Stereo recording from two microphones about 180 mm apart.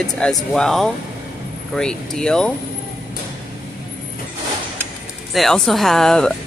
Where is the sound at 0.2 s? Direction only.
5° left (ahead or behind).